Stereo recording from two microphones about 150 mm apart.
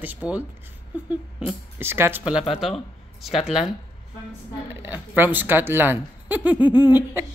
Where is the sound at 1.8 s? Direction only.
15° right (ahead or behind).